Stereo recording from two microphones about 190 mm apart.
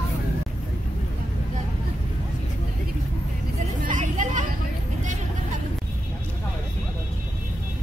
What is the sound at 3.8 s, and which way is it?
Vehicle, 40° right (ahead or behind).